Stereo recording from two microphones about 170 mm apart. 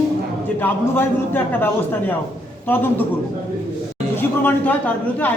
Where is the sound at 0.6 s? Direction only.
10° left (ahead or behind).